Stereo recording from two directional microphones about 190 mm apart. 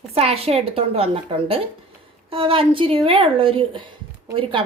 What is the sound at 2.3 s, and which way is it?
Speech, 30° right (ahead or behind).